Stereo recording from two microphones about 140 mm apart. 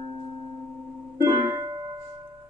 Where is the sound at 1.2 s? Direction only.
20° right (ahead or behind).